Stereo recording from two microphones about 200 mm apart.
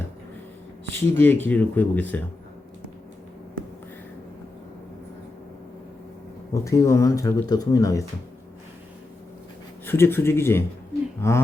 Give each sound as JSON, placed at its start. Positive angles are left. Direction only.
{"t": 0.9, "sound": "speech", "side_deg": 10}
{"t": 6.5, "sound": "speech", "side_deg": 15}
{"t": 9.8, "sound": "speech", "side_deg": 10}